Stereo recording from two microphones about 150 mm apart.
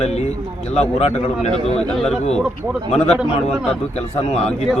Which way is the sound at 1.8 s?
5° left (ahead or behind).